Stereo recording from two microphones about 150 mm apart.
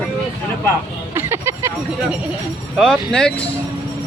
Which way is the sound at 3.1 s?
5° left (ahead or behind).